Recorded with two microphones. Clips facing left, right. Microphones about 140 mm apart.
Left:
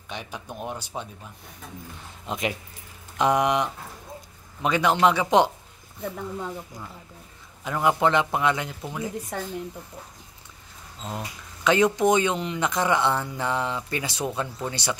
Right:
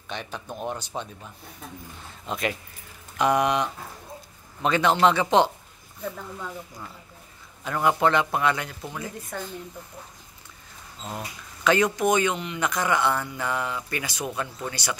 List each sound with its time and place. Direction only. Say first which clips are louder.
0.1 s a man's voice: right 1 dB; 10° left (ahead or behind)
2.2 s a man's voice: even; 15° left (ahead or behind)
7.6 s speech: even; 15° left (ahead or behind)
11.1 s speech: left 1 dB; 20° left (ahead or behind)